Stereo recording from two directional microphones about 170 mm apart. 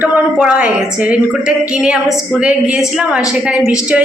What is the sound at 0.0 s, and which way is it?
A woman's voice, 5° right (ahead or behind).